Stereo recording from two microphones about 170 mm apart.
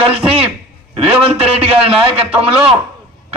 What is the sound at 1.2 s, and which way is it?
Speech, 35° right (ahead or behind).